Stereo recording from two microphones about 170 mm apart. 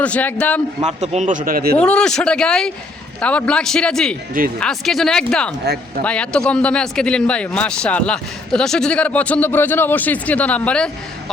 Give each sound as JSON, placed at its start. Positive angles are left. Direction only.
{"t": 0.0, "sound": "a man's voice", "side_deg": 10}
{"t": 0.9, "sound": "a man's voice", "side_deg": -40}
{"t": 1.8, "sound": "a man's voice", "side_deg": 5}
{"t": 5.7, "sound": "speech", "side_deg": -70}
{"t": 6.0, "sound": "a man's voice", "side_deg": 5}